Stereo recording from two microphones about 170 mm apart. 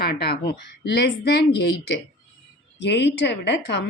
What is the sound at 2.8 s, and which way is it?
Speech, 90° left.